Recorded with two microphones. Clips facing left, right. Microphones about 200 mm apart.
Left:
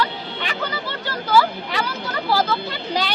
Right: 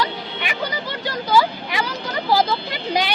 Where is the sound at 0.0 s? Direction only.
15° right (ahead or behind).